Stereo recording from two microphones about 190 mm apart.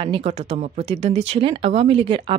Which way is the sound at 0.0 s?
30° right (ahead or behind).